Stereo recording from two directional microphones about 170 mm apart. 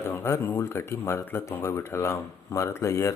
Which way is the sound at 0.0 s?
15° left (ahead or behind).